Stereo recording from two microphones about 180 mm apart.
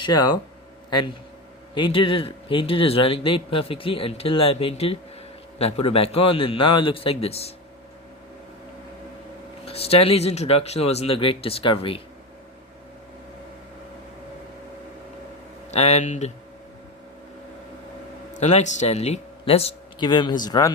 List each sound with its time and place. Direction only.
0.0 s speech: 20° left (ahead or behind)
1.7 s speech: 30° left (ahead or behind)
9.6 s speech: 35° left (ahead or behind)
15.7 s speech: 35° left (ahead or behind)
18.3 s speech: 40° left (ahead or behind); by 20.7 s 20° left (ahead or behind)